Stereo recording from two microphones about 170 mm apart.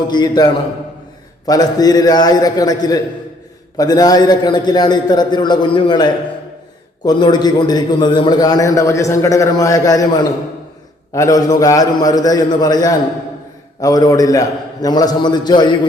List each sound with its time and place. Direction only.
0.1 s a man's voice: 25° left (ahead or behind)